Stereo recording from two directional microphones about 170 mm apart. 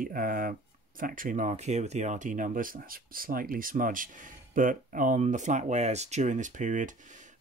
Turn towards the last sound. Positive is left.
turn(degrees=-45)  # may be behind; listen again after turning